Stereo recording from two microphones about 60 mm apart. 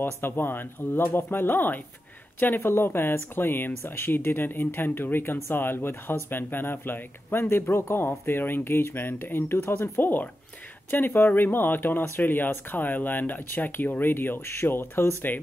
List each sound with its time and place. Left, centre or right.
0.0 s speech: left